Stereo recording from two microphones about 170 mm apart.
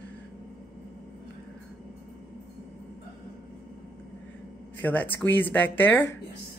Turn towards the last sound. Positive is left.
turn(degrees=10)  # may be behind; listen again after turning